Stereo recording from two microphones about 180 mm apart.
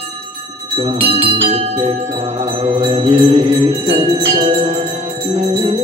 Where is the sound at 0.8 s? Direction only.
30° right (ahead or behind).